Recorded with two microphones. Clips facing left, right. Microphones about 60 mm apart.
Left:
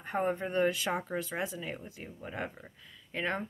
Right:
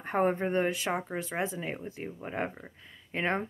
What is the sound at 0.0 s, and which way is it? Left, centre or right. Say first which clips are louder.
Speech: right 4 dB; right.